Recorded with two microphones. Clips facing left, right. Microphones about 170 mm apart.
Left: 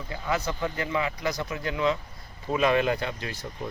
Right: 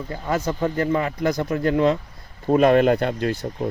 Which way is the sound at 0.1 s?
45° right (ahead or behind).